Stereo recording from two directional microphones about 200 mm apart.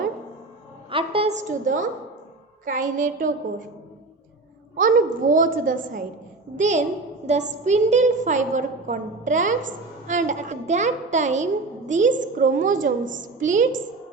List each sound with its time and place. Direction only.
0.9 s a woman's voice: 25° right (ahead or behind)
4.8 s a woman's voice: 40° right (ahead or behind)